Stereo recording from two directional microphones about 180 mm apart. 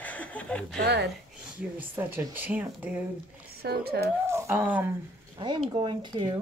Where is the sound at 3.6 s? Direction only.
60° right (ahead or behind).